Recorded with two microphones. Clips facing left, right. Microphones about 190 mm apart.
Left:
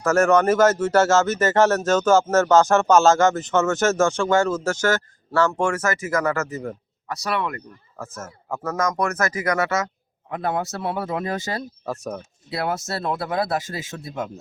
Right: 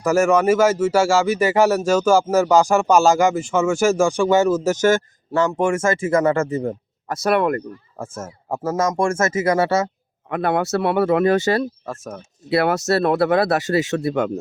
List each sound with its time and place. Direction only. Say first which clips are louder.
0.0 s speech: right 1 dB; 10° right (ahead or behind); by 6.7 s 30° right (ahead or behind)
7.1 s speech: right 8 dB; 50° right (ahead or behind)
7.9 s speech: right 2 dB; 30° right (ahead or behind)
10.2 s speech: right 5 dB; 70° right (ahead or behind)
11.9 s speech: left 2 dB; centre (ahead or behind)
12.5 s speech: right 8 dB; 75° right (ahead or behind)